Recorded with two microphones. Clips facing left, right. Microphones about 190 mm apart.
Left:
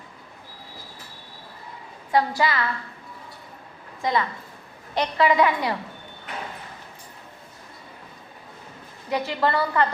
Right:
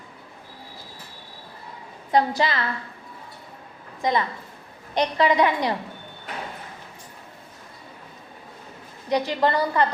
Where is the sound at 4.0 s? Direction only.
20° right (ahead or behind).